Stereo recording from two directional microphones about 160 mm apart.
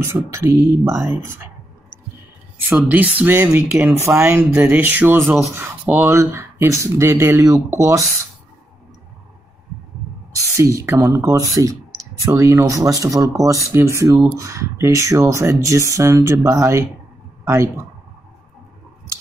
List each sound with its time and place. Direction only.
0.0 s speech: 15° right (ahead or behind)
2.7 s speech: 10° right (ahead or behind)
10.3 s a sound: 20° right (ahead or behind)
10.9 s speech: 20° right (ahead or behind)